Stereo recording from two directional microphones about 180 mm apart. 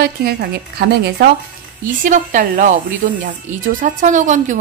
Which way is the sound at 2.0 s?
45° right (ahead or behind).